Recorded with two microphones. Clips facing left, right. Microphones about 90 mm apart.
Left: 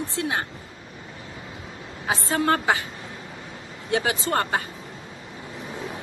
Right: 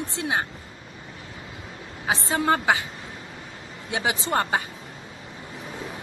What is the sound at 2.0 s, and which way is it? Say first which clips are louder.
Speech: left 1 dB; 10° right (ahead or behind).